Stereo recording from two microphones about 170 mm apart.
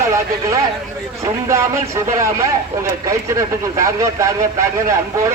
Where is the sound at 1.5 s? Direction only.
15° right (ahead or behind).